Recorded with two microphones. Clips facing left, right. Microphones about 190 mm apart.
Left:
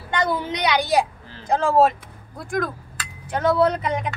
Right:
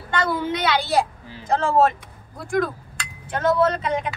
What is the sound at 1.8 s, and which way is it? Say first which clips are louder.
Speech: left 1 dB; centre (ahead or behind).